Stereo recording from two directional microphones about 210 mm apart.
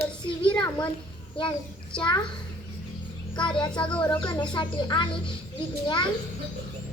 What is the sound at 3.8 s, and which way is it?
Speech, 5° left (ahead or behind).